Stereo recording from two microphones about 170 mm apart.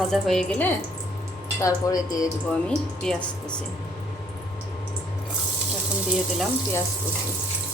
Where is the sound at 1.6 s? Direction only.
20° left (ahead or behind).